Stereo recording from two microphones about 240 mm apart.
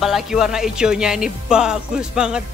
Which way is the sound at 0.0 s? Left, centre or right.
Centre.